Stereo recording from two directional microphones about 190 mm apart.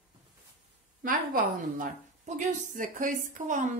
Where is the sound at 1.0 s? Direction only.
45° right (ahead or behind).